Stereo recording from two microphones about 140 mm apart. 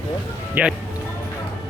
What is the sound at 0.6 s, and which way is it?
Speech, 10° right (ahead or behind).